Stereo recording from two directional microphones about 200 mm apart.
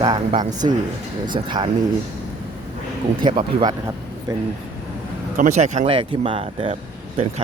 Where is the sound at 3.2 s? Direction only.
25° right (ahead or behind).